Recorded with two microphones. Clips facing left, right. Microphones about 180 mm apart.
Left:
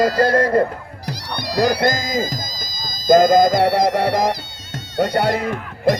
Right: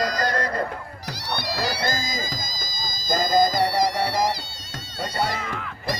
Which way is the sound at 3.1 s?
60° left (ahead or behind).